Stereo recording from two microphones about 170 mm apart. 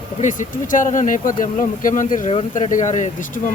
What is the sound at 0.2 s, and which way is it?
Speech, 50° left (ahead or behind).